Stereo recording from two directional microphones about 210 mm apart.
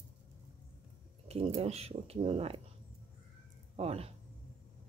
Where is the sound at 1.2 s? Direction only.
30° right (ahead or behind).